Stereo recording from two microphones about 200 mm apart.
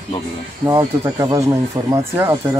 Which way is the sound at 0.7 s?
20° right (ahead or behind).